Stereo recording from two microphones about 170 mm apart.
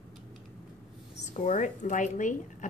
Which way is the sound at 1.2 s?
45° left (ahead or behind).